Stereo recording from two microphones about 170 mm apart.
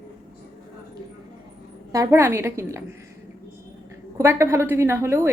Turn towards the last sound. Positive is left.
turn(degrees=-15)  # may be behind; listen again after turning